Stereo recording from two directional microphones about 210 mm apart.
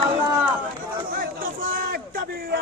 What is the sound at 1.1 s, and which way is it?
A man's voice, 40° right (ahead or behind).